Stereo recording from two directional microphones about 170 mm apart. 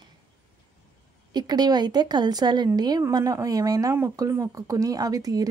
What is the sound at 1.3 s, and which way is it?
A woman's voice, 25° right (ahead or behind).